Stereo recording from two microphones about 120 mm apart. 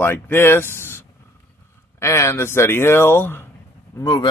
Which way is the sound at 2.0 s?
25° left (ahead or behind).